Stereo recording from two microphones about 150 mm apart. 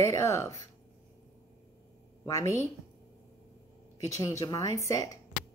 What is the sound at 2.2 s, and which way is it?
Speech, 20° left (ahead or behind).